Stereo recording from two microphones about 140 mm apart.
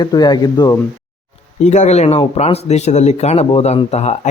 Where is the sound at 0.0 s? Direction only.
30° left (ahead or behind).